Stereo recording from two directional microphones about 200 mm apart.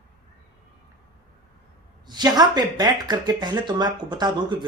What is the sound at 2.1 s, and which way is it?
Speech, 20° right (ahead or behind).